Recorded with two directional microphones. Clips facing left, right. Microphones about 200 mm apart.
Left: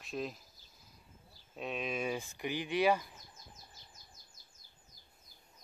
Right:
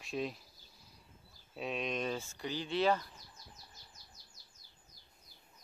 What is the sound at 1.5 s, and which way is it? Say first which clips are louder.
Speech: right 1 dB; centre (ahead or behind).